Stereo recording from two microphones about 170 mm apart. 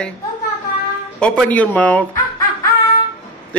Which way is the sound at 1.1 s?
5° left (ahead or behind).